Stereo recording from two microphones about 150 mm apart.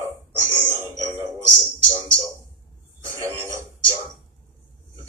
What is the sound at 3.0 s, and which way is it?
Speech, 20° right (ahead or behind).